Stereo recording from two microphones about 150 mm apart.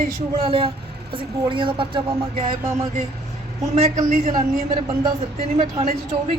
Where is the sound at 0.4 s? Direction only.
40° right (ahead or behind).